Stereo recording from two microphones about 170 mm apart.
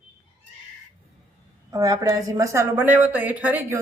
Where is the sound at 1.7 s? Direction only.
20° right (ahead or behind).